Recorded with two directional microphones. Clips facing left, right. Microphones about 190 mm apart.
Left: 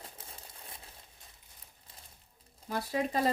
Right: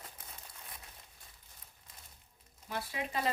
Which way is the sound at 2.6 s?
40° left (ahead or behind).